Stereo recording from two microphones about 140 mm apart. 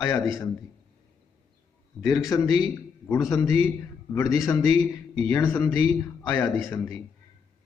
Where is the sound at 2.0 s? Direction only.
20° left (ahead or behind).